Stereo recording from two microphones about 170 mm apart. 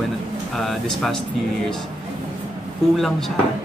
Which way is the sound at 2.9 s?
Centre (ahead or behind).